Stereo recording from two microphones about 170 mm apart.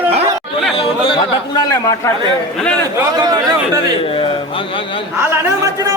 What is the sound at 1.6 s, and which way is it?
Speech, 20° left (ahead or behind).